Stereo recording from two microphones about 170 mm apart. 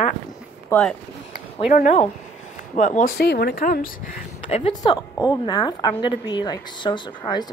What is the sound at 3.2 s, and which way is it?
Speech, 65° left (ahead or behind).